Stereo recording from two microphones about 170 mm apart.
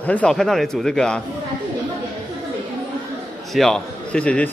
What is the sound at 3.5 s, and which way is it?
Speech, centre (ahead or behind).